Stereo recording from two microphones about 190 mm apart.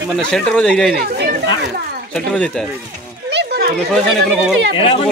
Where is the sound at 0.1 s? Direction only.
5° left (ahead or behind).